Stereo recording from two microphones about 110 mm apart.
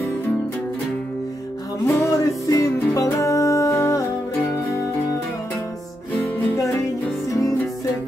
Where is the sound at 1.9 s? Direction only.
25° left (ahead or behind).